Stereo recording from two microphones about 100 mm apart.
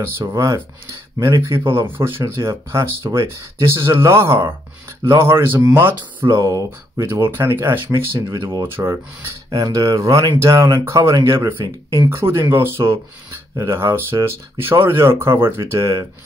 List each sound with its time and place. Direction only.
0.0 s speech: 25° right (ahead or behind)
8.4 s speech: 45° right (ahead or behind)
8.6 s speech: 20° right (ahead or behind)
9.5 s speech: 35° right (ahead or behind)